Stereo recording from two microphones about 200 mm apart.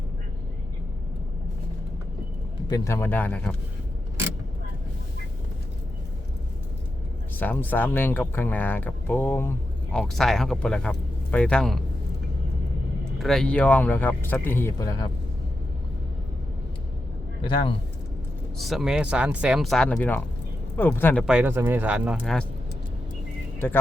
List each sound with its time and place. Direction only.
2.6 s speech: 15° left (ahead or behind)
7.3 s speech: 10° left (ahead or behind)
13.1 s speech: centre (ahead or behind); by 15.1 s 20° left (ahead or behind)
17.4 s a man's voice: 25° left (ahead or behind)
18.6 s speech: centre (ahead or behind)
21.2 s speech: 5° right (ahead or behind)
23.6 s speech: 10° left (ahead or behind)